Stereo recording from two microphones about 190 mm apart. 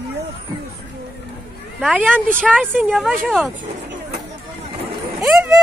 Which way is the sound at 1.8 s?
Centre (ahead or behind).